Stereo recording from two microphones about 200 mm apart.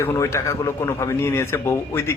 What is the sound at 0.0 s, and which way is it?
A man's voice, 15° left (ahead or behind).